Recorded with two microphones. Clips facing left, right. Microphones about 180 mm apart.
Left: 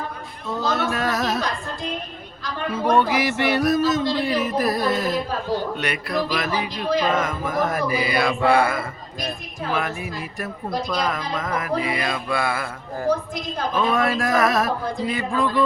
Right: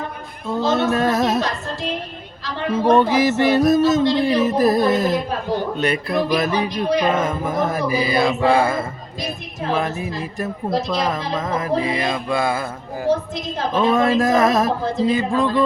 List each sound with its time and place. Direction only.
0.4 s speech: 25° right (ahead or behind)
2.6 s speech: 25° right (ahead or behind)